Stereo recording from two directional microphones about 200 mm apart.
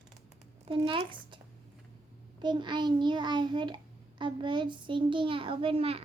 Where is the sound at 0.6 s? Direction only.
25° right (ahead or behind).